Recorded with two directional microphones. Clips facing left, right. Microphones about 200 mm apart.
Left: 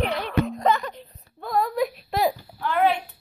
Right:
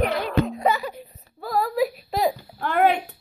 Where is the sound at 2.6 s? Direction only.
50° right (ahead or behind).